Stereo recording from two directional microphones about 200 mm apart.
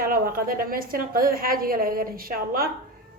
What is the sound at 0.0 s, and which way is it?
A woman's voice, 45° right (ahead or behind).